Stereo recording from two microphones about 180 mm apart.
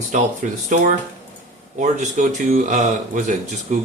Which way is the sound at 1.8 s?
40° right (ahead or behind).